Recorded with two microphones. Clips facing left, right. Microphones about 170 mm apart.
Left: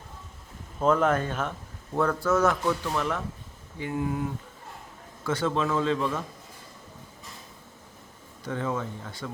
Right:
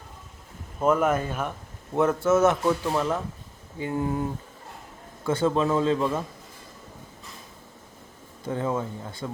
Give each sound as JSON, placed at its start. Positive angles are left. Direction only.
{"t": 0.8, "sound": "speech", "side_deg": -10}
{"t": 2.0, "sound": "a man's voice", "side_deg": -20}
{"t": 8.4, "sound": "speech", "side_deg": -25}